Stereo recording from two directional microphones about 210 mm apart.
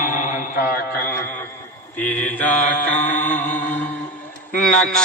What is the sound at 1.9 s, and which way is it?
Mantra, 5° left (ahead or behind).